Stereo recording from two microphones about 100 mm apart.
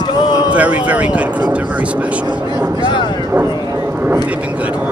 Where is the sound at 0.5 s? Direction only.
15° right (ahead or behind).